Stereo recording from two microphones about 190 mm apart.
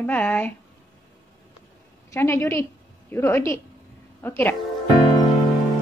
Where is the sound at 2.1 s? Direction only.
15° left (ahead or behind).